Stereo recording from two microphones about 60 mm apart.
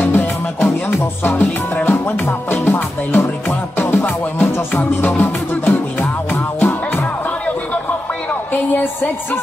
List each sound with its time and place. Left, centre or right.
0.0 s music: left